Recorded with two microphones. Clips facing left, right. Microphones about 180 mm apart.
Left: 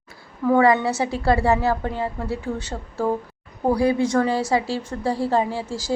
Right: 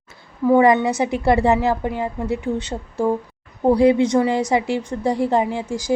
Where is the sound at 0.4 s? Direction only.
15° right (ahead or behind).